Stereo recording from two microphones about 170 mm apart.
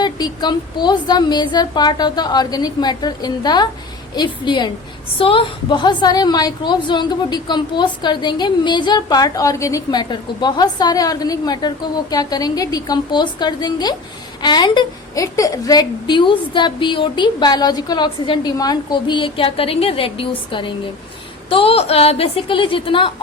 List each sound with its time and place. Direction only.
0.0 s a woman's voice: 25° left (ahead or behind)